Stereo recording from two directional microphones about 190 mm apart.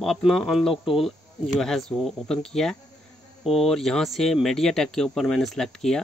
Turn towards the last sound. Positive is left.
turn(degrees=5)  # may be behind; listen again after turning